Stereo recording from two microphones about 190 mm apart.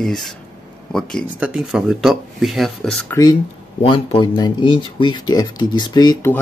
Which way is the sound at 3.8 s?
30° left (ahead or behind).